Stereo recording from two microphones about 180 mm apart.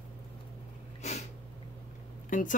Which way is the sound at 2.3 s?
45° left (ahead or behind).